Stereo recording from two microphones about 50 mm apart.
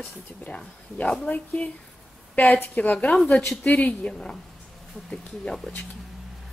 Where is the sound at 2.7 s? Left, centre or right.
Left.